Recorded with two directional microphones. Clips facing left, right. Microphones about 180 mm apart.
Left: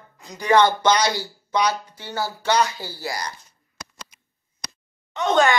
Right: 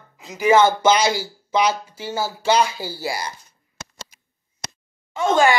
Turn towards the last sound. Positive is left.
turn(degrees=-5)  # may be behind; listen again after turning